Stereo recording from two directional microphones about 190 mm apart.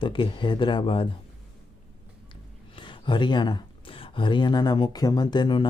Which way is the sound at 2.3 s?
25° left (ahead or behind).